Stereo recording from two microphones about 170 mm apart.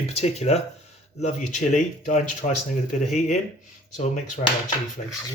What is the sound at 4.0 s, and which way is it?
Speech, 40° left (ahead or behind).